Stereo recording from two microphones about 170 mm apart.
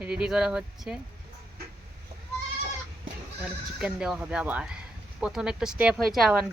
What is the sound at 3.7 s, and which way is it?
Speech, 5° right (ahead or behind).